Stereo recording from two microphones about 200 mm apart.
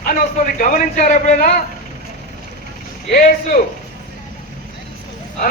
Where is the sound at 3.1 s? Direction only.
40° left (ahead or behind).